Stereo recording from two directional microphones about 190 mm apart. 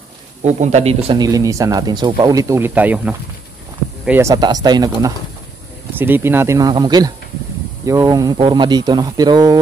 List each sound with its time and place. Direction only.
0.4 s speech: 35° right (ahead or behind); by 5.1 s 20° right (ahead or behind)
5.9 s speech: 10° right (ahead or behind)